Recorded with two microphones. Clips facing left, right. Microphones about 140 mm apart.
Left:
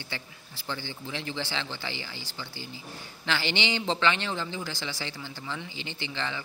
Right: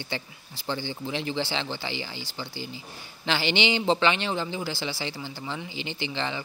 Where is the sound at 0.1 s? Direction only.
20° right (ahead or behind).